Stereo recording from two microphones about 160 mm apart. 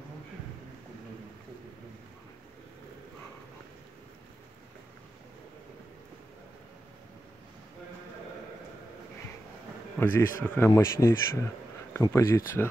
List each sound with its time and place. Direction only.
9.9 s a man's voice: 15° left (ahead or behind)
10.7 s speech: 20° left (ahead or behind)